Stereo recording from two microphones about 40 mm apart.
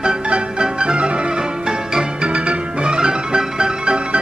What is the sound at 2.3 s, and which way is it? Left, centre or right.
Music, right.